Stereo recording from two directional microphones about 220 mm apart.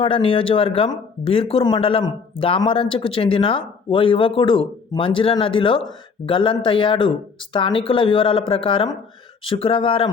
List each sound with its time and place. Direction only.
0.0 s speech: 25° left (ahead or behind)